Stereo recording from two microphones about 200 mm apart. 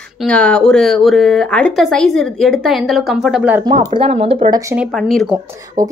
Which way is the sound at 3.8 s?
30° right (ahead or behind).